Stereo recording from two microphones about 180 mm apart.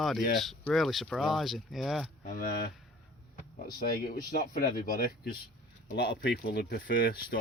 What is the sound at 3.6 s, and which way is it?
Speech, 55° left (ahead or behind).